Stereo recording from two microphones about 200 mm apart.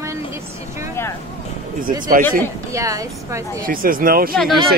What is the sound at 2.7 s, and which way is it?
Speech, 15° right (ahead or behind).